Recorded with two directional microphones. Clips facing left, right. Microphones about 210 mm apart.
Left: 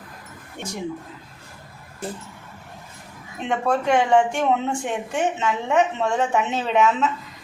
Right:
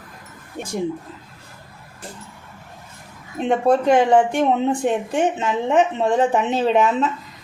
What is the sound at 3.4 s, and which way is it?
Speech, 35° right (ahead or behind).